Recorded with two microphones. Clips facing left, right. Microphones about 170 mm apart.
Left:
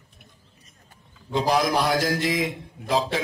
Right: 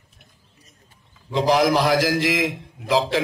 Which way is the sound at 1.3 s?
85° right.